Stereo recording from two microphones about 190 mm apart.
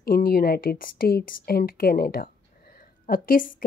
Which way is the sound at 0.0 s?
50° left (ahead or behind).